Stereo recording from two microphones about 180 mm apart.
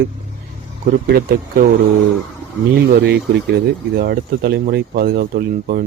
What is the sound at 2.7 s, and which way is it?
Speech, 65° right (ahead or behind).